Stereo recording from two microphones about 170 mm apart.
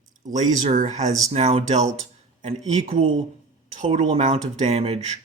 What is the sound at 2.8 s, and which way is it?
Speech, 45° right (ahead or behind).